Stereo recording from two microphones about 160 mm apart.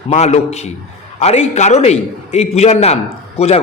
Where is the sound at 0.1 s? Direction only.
45° left (ahead or behind).